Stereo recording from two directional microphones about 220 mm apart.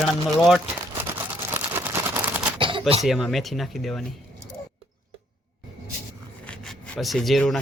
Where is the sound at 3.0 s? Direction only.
Centre (ahead or behind).